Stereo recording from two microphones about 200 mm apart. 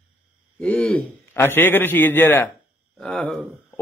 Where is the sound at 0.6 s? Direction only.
5° left (ahead or behind).